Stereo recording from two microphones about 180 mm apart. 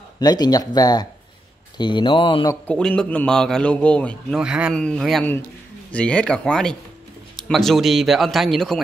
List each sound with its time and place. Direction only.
0.2 s speech: 20° left (ahead or behind)
2.6 s a man's voice: 5° left (ahead or behind)
4.4 s a man's voice: 5° right (ahead or behind)